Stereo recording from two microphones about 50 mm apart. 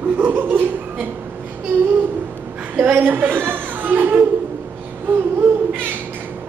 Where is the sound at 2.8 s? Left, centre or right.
Right.